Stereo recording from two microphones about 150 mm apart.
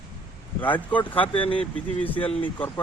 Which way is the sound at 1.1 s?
35° left (ahead or behind).